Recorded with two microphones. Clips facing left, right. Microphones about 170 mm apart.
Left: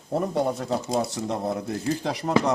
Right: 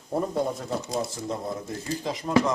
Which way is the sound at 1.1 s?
70° left (ahead or behind).